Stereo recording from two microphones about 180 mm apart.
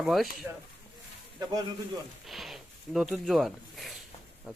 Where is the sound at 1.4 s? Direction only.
20° right (ahead or behind).